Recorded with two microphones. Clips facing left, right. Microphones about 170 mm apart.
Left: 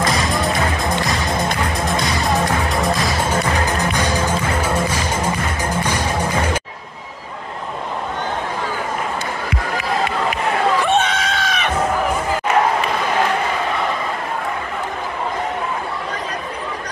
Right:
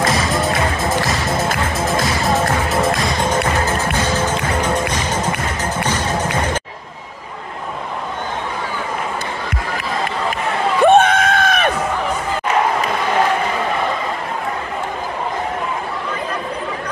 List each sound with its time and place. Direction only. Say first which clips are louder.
0.0 s music: right 1 dB; centre (ahead or behind)
3.6 s music: even; 15° left (ahead or behind)
10.8 s a sound: right 7 dB; 55° right (ahead or behind)